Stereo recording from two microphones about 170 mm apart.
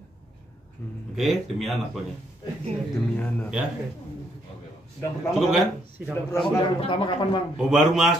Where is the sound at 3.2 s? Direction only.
10° left (ahead or behind).